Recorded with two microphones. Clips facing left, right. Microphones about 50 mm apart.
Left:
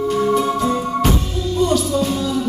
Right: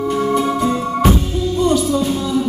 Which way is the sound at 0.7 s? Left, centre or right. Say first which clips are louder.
Right 2 dB; centre.